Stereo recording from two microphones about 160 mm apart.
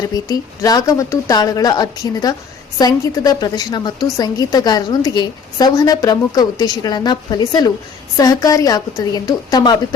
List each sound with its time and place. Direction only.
0.3 s a woman's voice: 20° left (ahead or behind)